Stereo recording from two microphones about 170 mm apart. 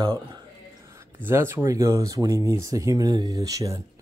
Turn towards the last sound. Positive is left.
turn(degrees=-20)  # may be behind; listen again after turning